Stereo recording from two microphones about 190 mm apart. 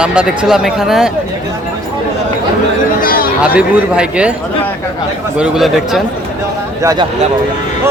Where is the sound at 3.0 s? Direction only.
50° left (ahead or behind).